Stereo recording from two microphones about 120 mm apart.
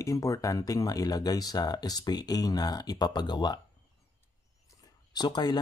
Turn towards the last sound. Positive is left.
turn(degrees=35)  # may be behind; listen again after turning